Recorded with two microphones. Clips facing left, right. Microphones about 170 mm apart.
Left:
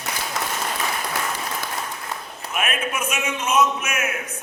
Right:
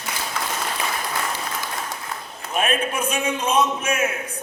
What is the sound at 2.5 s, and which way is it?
A man's voice, 30° right (ahead or behind).